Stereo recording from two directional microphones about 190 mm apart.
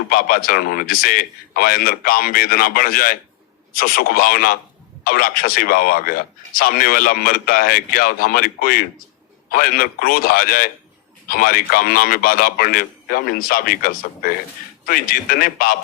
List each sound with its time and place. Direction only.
0.1 s speech: 50° left (ahead or behind)